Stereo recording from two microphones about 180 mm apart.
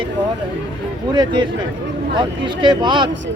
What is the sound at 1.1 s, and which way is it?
Speech, 25° right (ahead or behind).